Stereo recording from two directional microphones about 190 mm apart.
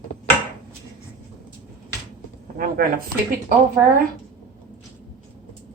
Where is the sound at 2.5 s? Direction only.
50° right (ahead or behind).